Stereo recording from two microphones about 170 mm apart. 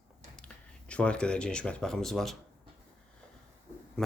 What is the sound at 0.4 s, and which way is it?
Speech, 5° left (ahead or behind).